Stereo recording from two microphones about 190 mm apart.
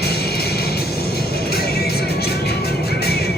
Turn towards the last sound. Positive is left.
turn(degrees=55)  # may be behind; listen again after turning